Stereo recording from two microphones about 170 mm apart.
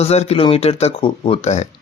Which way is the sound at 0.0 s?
40° left (ahead or behind).